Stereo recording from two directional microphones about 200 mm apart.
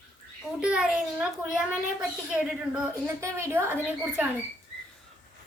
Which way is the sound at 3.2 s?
15° right (ahead or behind).